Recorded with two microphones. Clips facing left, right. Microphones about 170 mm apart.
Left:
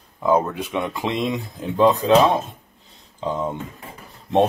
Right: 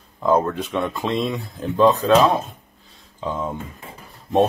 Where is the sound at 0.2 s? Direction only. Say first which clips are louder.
Right 1 dB; 10° left (ahead or behind).